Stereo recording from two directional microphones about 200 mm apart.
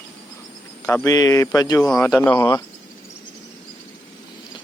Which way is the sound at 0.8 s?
15° left (ahead or behind).